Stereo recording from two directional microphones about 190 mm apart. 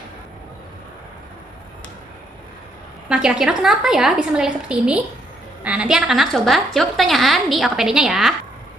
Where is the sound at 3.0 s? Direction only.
5° right (ahead or behind).